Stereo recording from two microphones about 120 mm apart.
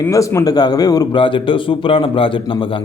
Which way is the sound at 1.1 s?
45° left (ahead or behind).